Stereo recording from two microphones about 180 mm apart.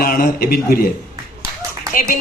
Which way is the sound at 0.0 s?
55° left (ahead or behind).